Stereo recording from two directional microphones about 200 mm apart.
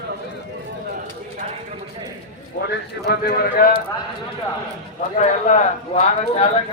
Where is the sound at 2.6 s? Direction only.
55° left (ahead or behind).